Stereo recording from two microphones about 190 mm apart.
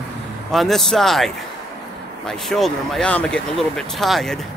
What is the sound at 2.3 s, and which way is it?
Speech, centre (ahead or behind).